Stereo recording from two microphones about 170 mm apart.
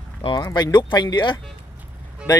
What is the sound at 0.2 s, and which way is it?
Speech, 25° left (ahead or behind).